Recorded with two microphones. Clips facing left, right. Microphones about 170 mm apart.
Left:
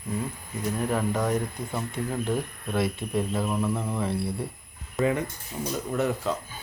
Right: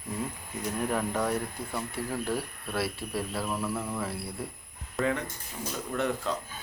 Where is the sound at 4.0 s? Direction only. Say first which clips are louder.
Left 6 dB; centre (ahead or behind).